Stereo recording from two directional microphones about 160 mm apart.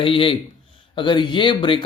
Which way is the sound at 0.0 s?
35° left (ahead or behind).